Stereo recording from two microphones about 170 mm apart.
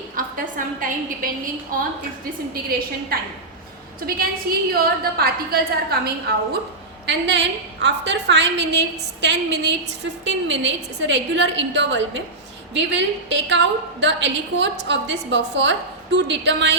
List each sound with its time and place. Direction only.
0.2 s a woman's voice: 55° right (ahead or behind)
2.5 s a woman's voice: 60° right (ahead or behind)
7.1 s a woman's voice: 90° right